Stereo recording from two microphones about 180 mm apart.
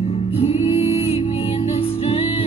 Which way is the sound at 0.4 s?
30° left (ahead or behind).